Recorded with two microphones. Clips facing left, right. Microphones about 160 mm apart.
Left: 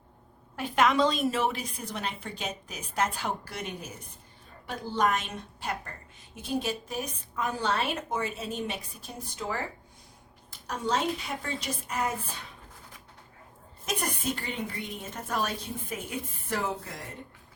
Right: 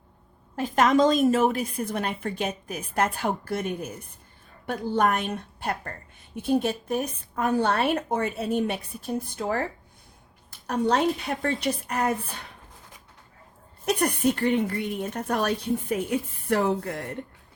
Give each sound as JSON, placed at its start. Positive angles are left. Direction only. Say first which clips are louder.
{"t": 0.5, "sound": "a woman's voice", "louder": "right 4 dB", "side_deg": -45}
{"t": 10.7, "sound": "a woman's voice", "louder": "right 6 dB", "side_deg": -60}
{"t": 13.8, "sound": "a woman's voice", "louder": "right 9 dB", "side_deg": -60}